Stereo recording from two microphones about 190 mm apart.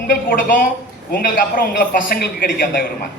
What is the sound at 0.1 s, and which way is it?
A man's voice, 45° left (ahead or behind).